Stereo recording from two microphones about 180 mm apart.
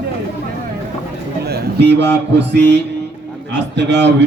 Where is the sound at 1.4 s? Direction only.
65° right (ahead or behind).